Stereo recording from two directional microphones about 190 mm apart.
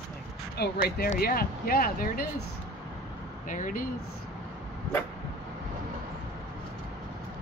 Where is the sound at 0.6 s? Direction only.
55° left (ahead or behind).